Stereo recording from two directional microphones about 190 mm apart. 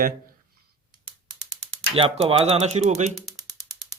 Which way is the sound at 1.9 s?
30° right (ahead or behind).